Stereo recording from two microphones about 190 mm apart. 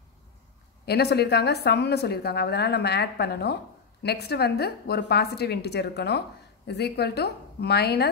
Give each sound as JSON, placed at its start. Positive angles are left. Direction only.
{"t": 0.8, "sound": "a woman's voice", "side_deg": 60}